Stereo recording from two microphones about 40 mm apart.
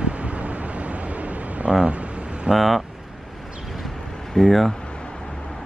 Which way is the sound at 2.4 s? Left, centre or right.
Centre.